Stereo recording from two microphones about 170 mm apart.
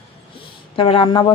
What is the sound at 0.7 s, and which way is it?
Speech, 30° left (ahead or behind).